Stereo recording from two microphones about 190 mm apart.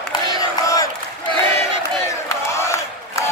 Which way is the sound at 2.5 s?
15° left (ahead or behind).